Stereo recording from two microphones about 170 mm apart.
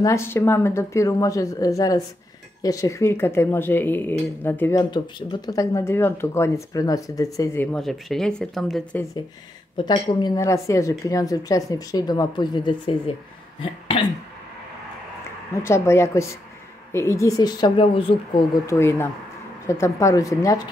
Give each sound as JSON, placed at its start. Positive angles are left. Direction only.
{"t": 0.0, "sound": "a woman's voice", "side_deg": 15}
{"t": 4.9, "sound": "speech", "side_deg": 25}
{"t": 9.8, "sound": "a woman's voice", "side_deg": 25}
{"t": 13.6, "sound": "throat clearing", "side_deg": 30}
{"t": 15.6, "sound": "a woman's voice", "side_deg": 15}
{"t": 18.7, "sound": "speech", "side_deg": 15}